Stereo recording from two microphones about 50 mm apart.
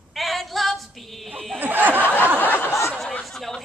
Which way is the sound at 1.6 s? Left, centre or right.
Right.